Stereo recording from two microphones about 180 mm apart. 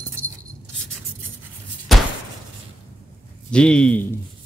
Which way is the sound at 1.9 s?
Centre (ahead or behind).